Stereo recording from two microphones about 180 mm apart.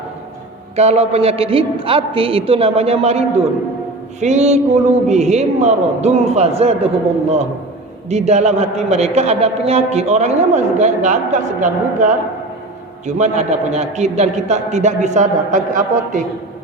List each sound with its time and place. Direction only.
0.8 s a man's voice: 35° right (ahead or behind)